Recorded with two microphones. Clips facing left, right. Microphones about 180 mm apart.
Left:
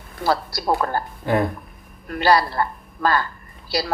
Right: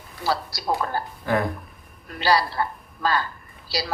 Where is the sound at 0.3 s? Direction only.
55° left (ahead or behind).